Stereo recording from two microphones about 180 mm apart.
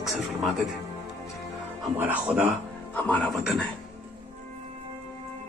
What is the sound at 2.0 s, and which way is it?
Speech, 10° right (ahead or behind).